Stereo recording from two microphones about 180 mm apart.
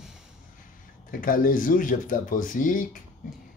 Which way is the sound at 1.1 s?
50° left (ahead or behind).